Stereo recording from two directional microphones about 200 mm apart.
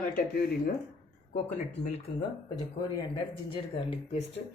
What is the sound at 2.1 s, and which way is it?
Speech, 30° left (ahead or behind).